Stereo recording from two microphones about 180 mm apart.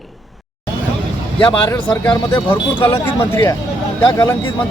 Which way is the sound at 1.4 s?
25° left (ahead or behind).